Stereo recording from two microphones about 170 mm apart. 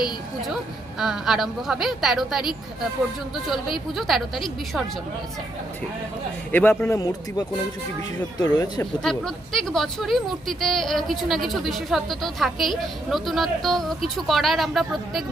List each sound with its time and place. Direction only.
0.4 s speech: centre (ahead or behind)
3.9 s speech: centre (ahead or behind)
6.5 s speech: 10° left (ahead or behind)
9.0 s speech: centre (ahead or behind)